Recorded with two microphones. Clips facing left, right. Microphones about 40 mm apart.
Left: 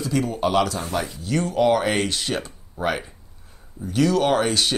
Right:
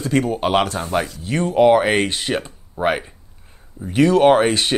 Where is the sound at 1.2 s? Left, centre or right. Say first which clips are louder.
Right 5 dB; right.